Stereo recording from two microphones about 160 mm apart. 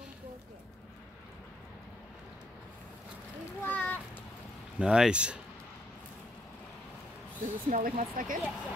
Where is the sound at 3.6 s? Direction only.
10° left (ahead or behind).